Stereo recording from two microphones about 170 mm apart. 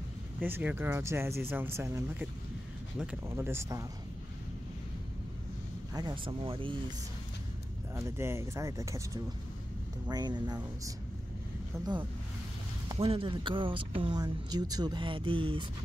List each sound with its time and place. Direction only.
0.4 s speech: 10° right (ahead or behind)
3.3 s speech: 15° right (ahead or behind)
5.9 s speech: 25° right (ahead or behind)
7.9 s speech: 15° right (ahead or behind); by 15.6 s 30° right (ahead or behind)